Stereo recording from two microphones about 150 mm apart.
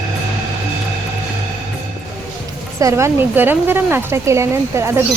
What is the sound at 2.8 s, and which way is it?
Speech, 20° right (ahead or behind).